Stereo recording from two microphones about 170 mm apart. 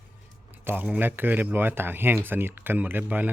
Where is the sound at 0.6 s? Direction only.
10° right (ahead or behind).